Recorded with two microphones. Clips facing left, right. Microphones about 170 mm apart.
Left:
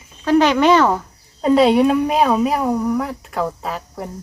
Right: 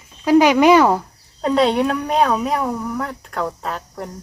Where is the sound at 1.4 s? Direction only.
5° left (ahead or behind).